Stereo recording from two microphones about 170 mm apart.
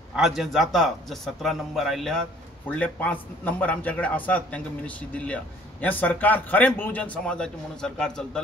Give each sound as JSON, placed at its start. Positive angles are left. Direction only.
{"t": 0.1, "sound": "a man's voice", "side_deg": 0}